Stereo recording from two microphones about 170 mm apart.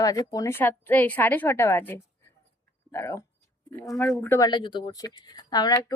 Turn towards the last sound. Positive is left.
turn(degrees=25)  # may be behind; listen again after turning